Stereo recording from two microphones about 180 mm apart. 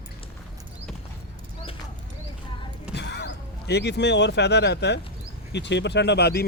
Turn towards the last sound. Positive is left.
turn(degrees=65)  # may be behind; listen again after turning